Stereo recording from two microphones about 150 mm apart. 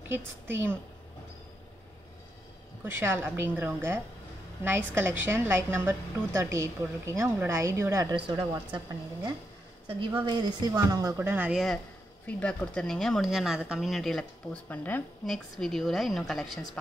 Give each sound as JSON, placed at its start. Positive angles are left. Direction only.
{"t": 0.1, "sound": "a woman's voice", "side_deg": -15}
{"t": 2.8, "sound": "a woman's voice", "side_deg": -15}
{"t": 8.2, "sound": "a woman's voice", "side_deg": -30}
{"t": 11.1, "sound": "a woman's voice", "side_deg": -10}
{"t": 12.3, "sound": "speech", "side_deg": 10}